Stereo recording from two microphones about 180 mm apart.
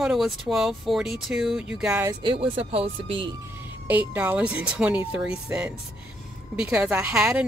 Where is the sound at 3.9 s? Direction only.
10° right (ahead or behind).